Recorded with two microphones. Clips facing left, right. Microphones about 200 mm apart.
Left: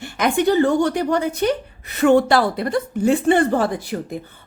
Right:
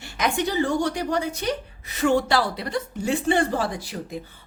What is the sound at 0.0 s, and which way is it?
A woman's voice, 55° left (ahead or behind).